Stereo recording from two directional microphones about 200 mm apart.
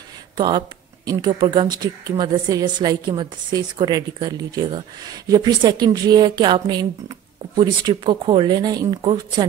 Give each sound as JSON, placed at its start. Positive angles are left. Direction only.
{"t": 0.4, "sound": "speech", "side_deg": -20}